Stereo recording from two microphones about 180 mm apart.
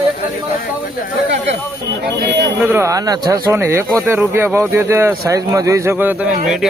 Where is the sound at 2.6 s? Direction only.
15° right (ahead or behind).